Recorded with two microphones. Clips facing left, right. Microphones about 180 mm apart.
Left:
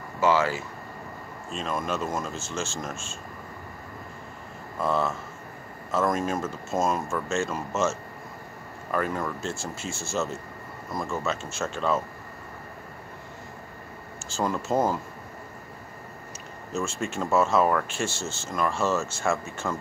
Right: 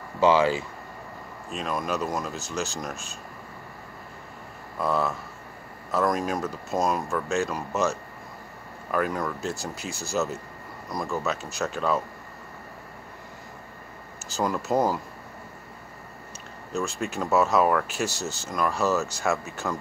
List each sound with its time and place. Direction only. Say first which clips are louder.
0.2 s speech: right 3 dB; 15° right (ahead or behind)
1.5 s speech: right 1 dB; centre (ahead or behind)
4.7 s speech: even; centre (ahead or behind)
8.9 s speech: right 1 dB; centre (ahead or behind)
14.3 s speech: right 1 dB; centre (ahead or behind)
16.7 s speech: right 1 dB; centre (ahead or behind)